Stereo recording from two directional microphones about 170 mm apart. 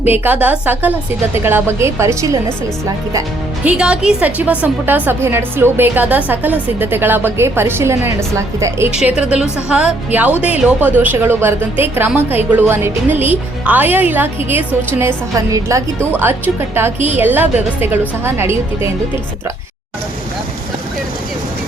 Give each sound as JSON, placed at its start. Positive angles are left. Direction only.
{"t": 0.0, "sound": "a woman's voice", "side_deg": -10}
{"t": 3.6, "sound": "a woman's voice", "side_deg": -5}
{"t": 8.9, "sound": "a woman's voice", "side_deg": -5}